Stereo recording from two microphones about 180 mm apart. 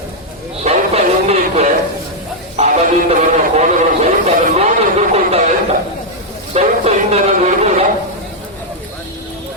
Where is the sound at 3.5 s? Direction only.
35° right (ahead or behind).